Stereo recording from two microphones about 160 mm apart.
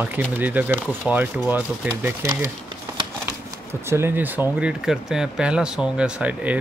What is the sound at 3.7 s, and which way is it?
Speech, 15° right (ahead or behind).